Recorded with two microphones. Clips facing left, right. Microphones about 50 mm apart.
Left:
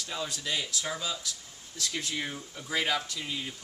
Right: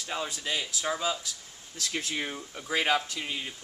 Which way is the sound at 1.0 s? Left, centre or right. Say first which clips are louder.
Right 4 dB; right.